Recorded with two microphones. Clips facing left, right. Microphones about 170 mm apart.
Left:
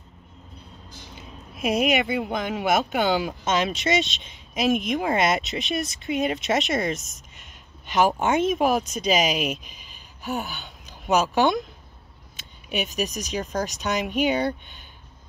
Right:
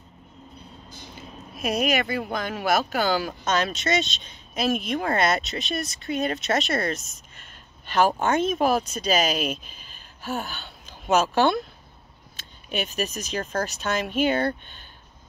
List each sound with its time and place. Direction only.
1.6 s speech: 20° left (ahead or behind)
7.8 s a sound: 15° left (ahead or behind)
8.3 s a woman's voice: 20° left (ahead or behind)
12.6 s speech: 15° left (ahead or behind)